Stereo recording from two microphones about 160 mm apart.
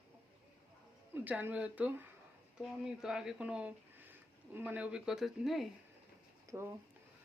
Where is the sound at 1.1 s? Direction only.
10° right (ahead or behind).